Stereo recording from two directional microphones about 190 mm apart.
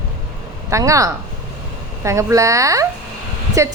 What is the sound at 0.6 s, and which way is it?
A woman's voice, 15° right (ahead or behind).